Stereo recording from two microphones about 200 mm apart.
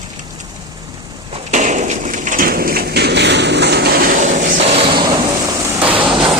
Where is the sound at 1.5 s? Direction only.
35° right (ahead or behind).